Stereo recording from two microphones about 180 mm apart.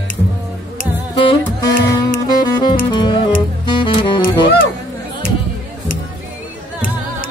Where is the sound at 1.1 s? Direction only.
25° left (ahead or behind).